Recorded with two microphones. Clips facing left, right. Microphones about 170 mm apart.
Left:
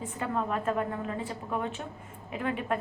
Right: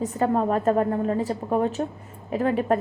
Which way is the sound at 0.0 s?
40° right (ahead or behind).